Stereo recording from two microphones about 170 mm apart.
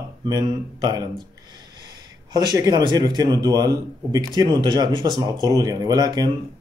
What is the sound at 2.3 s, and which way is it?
Speech, 25° right (ahead or behind).